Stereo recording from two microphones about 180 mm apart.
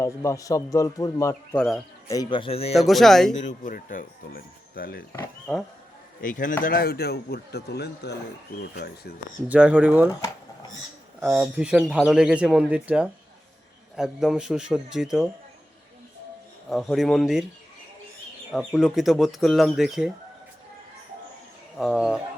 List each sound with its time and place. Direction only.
0.0 s speech: 15° left (ahead or behind)
1.5 s speech: centre (ahead or behind)
2.0 s speech: 25° left (ahead or behind)
2.7 s speech: centre (ahead or behind)
3.4 s speech: 50° left (ahead or behind)
6.2 s speech: 45° left (ahead or behind); by 9.1 s 65° left (ahead or behind)
9.5 s speech: 5° right (ahead or behind)
10.1 s speech: 20° left (ahead or behind)
11.2 s speech: 5° right (ahead or behind)
16.6 s speech: centre (ahead or behind)
18.5 s speech: centre (ahead or behind)
21.8 s speech: centre (ahead or behind)